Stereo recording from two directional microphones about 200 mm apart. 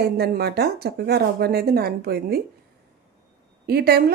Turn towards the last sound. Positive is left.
turn(degrees=-50)  # may be behind; listen again after turning